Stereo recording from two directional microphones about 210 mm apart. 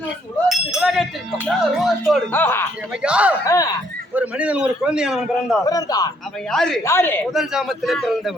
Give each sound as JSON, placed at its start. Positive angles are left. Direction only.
{"t": 0.4, "sound": "a sound", "side_deg": 0}
{"t": 1.5, "sound": "a man's voice", "side_deg": 0}
{"t": 2.3, "sound": "speech", "side_deg": 10}
{"t": 3.0, "sound": "a man's voice", "side_deg": -5}
{"t": 3.4, "sound": "speech", "side_deg": 15}
{"t": 4.1, "sound": "a man's voice", "side_deg": -5}
{"t": 5.6, "sound": "speech", "side_deg": 15}
{"t": 6.5, "sound": "a man's voice", "side_deg": 0}
{"t": 7.3, "sound": "a man's voice", "side_deg": 0}